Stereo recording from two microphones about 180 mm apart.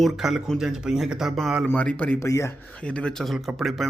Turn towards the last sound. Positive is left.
turn(degrees=0)  # may be behind; listen again after turning